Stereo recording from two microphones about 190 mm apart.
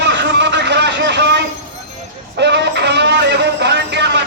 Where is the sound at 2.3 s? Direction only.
65° right (ahead or behind).